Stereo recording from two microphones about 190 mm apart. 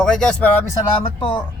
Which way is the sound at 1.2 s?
25° left (ahead or behind).